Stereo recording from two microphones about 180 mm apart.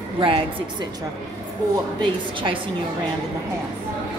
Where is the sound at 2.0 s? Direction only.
30° right (ahead or behind).